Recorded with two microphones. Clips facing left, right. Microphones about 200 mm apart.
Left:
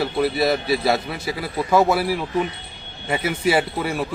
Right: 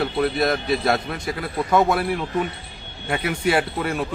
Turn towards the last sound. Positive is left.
turn(degrees=5)  # may be behind; listen again after turning